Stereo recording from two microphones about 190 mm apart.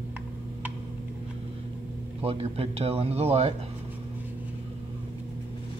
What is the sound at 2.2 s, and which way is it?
A man's voice, 30° right (ahead or behind).